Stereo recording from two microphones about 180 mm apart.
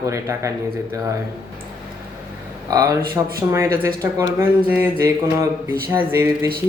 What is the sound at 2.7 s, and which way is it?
Speech, 20° right (ahead or behind).